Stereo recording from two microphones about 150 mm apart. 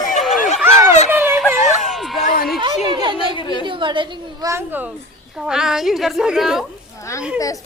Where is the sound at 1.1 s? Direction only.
10° right (ahead or behind).